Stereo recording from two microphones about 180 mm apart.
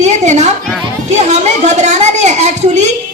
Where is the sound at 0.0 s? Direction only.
40° right (ahead or behind).